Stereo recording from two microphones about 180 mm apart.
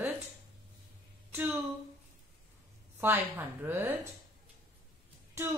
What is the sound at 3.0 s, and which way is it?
Speech, 10° right (ahead or behind).